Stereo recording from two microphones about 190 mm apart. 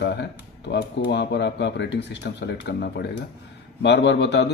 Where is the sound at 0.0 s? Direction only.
65° left (ahead or behind).